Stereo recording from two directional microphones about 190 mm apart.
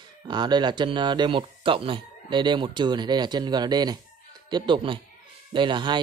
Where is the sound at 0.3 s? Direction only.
25° right (ahead or behind).